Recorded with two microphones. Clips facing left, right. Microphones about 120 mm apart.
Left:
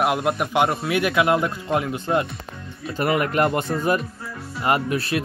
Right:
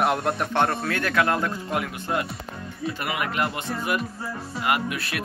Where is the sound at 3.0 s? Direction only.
40° left (ahead or behind).